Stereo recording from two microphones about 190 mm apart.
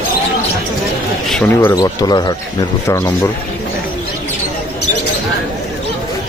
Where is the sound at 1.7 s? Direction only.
20° left (ahead or behind).